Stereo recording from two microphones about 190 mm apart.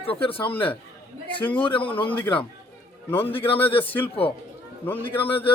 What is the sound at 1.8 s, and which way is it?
Speech, 25° left (ahead or behind).